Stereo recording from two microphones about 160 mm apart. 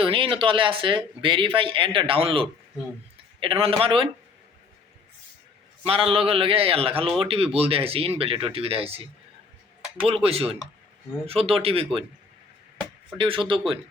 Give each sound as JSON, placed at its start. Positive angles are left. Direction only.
{"t": 0.0, "sound": "speech", "side_deg": -35}
{"t": 5.8, "sound": "speech", "side_deg": -35}
{"t": 10.2, "sound": "speech", "side_deg": -40}
{"t": 13.1, "sound": "speech", "side_deg": -30}